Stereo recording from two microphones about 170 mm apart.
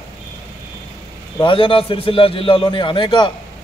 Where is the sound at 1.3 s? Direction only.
30° left (ahead or behind).